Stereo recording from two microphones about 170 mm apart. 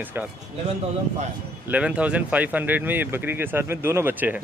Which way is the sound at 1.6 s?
5° right (ahead or behind).